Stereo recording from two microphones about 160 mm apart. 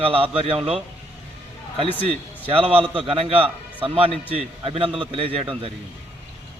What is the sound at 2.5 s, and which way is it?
Speech, 35° right (ahead or behind).